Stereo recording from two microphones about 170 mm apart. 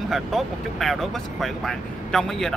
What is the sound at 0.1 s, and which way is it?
Speech, centre (ahead or behind).